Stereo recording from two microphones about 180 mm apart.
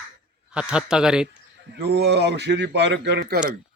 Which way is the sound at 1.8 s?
65° right (ahead or behind).